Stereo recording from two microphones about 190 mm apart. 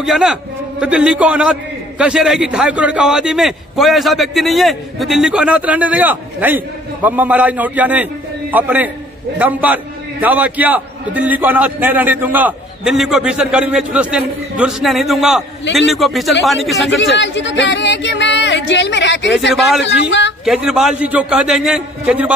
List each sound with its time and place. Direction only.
0.0 s a man's voice: centre (ahead or behind)
16.9 s speech: 70° left (ahead or behind)
19.5 s a man's voice: centre (ahead or behind)
19.8 s speech: 70° left (ahead or behind)
20.4 s a man's voice: centre (ahead or behind)